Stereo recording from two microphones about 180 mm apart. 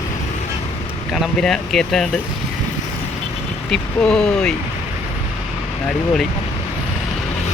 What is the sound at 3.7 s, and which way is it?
Speech, 5° left (ahead or behind).